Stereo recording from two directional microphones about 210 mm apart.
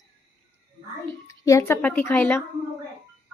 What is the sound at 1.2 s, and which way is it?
A woman's voice, 15° left (ahead or behind).